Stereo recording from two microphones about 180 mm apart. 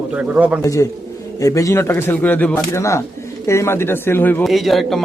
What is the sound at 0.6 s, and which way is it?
A man's voice, 15° left (ahead or behind).